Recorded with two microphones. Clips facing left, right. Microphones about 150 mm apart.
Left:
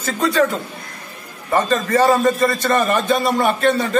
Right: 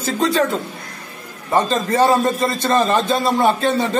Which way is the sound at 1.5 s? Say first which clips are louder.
Left 1 dB; 25° right (ahead or behind).